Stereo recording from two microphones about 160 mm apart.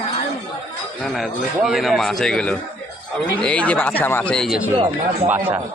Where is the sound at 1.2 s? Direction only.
Centre (ahead or behind).